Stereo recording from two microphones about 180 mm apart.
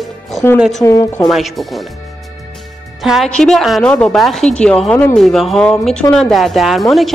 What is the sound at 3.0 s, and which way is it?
A woman's voice, centre (ahead or behind).